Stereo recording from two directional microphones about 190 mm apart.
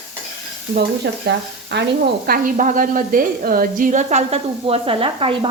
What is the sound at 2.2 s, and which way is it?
A woman's voice, 45° right (ahead or behind).